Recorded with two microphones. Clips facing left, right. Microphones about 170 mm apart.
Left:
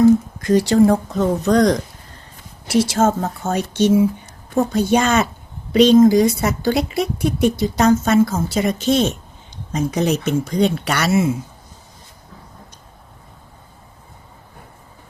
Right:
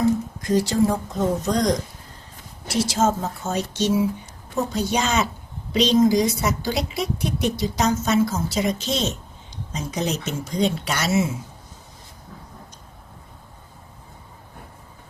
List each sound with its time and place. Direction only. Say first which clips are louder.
0.4 s a woman's voice: left 6 dB; 65° left (ahead or behind)